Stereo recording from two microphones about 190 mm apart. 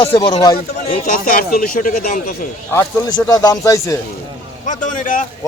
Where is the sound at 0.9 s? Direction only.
45° left (ahead or behind).